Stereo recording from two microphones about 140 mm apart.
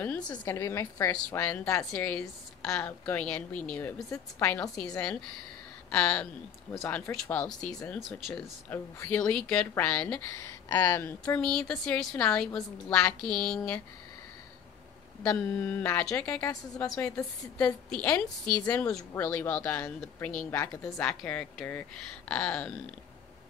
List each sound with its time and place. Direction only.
0.0 s a woman's voice: 10° left (ahead or behind)
1.9 s a woman's voice: 10° left (ahead or behind)
5.9 s a woman's voice: 5° left (ahead or behind)
8.6 s a woman's voice: 15° left (ahead or behind)
15.2 s a woman's voice: 10° left (ahead or behind)
16.8 s a woman's voice: 5° left (ahead or behind)
20.5 s a woman's voice: 20° left (ahead or behind)
21.0 s a woman's voice: 5° left (ahead or behind)